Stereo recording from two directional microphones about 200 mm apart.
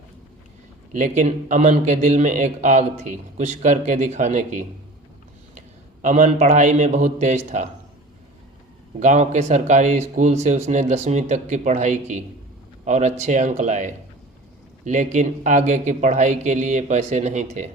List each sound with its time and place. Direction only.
0.9 s a man's voice: 40° right (ahead or behind)
9.0 s a man's voice: 35° right (ahead or behind)